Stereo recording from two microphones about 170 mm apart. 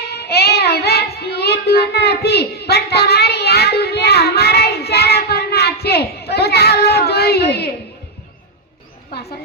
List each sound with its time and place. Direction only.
0.0 s child singing: 70° left (ahead or behind)